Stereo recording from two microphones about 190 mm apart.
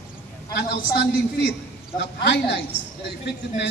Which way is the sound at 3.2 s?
65° left (ahead or behind).